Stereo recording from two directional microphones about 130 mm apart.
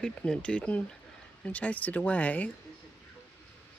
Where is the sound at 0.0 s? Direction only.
5° left (ahead or behind).